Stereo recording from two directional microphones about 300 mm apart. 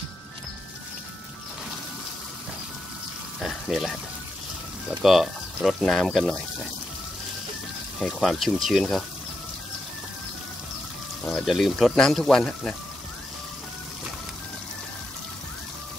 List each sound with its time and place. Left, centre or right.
3.3 s water: centre
5.0 s speech: centre
8.0 s speech: centre
11.2 s speech: centre